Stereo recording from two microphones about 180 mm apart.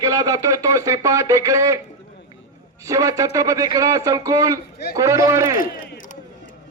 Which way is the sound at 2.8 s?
20° right (ahead or behind).